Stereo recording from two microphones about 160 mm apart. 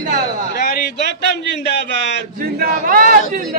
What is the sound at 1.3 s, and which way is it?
Speech, 90° left.